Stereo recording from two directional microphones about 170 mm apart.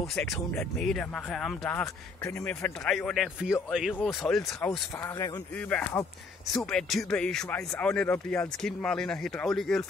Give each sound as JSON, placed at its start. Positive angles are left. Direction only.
{"t": 0.1, "sound": "speech", "side_deg": 5}
{"t": 4.6, "sound": "speech", "side_deg": 15}